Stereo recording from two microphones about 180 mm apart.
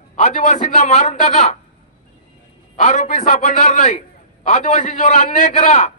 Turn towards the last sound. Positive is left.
turn(degrees=40)  # may be behind; listen again after turning